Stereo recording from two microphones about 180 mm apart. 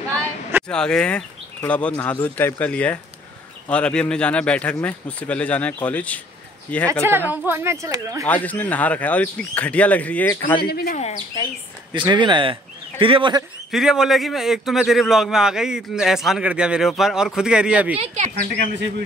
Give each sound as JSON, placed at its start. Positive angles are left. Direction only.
{"t": 0.7, "sound": "speech", "side_deg": 5}
{"t": 6.9, "sound": "speech", "side_deg": -15}
{"t": 8.3, "sound": "speech", "side_deg": 10}
{"t": 10.6, "sound": "speech", "side_deg": 60}
{"t": 11.0, "sound": "speech", "side_deg": 40}
{"t": 11.9, "sound": "speech", "side_deg": -25}
{"t": 13.7, "sound": "a man's voice", "side_deg": 0}
{"t": 17.9, "sound": "speech", "side_deg": -35}
{"t": 18.3, "sound": "speech", "side_deg": -75}